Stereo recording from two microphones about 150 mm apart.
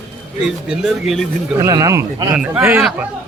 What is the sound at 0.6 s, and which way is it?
Speech, 5° right (ahead or behind).